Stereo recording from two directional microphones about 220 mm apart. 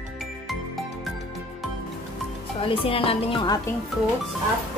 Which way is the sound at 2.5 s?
25° left (ahead or behind).